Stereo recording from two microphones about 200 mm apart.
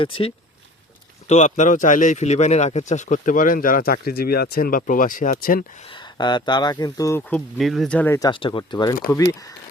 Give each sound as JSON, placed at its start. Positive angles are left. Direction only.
{"t": 0.0, "sound": "speech", "side_deg": 25}
{"t": 5.9, "sound": "speech", "side_deg": 25}
{"t": 8.3, "sound": "speech", "side_deg": 25}